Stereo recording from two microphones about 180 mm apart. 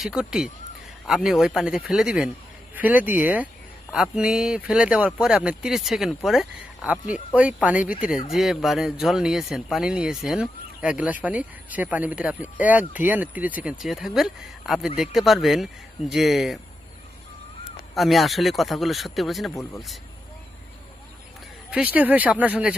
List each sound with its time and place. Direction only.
0.0 s speech: 5° right (ahead or behind)
17.9 s speech: centre (ahead or behind)
19.5 s speech: 15° left (ahead or behind)
21.7 s speech: 5° right (ahead or behind)